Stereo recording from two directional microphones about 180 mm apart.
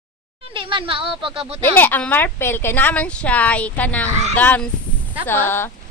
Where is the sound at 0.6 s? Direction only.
30° right (ahead or behind).